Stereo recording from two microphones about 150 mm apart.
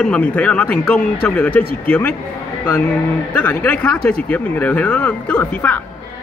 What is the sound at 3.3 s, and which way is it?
Speech, 10° left (ahead or behind).